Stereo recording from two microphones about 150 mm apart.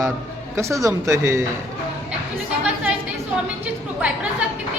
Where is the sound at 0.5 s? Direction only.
20° right (ahead or behind).